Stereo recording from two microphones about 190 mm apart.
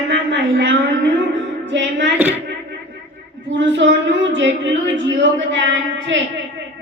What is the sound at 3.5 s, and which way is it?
Speech, 75° right (ahead or behind).